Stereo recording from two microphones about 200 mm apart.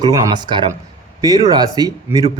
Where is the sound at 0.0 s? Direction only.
20° right (ahead or behind).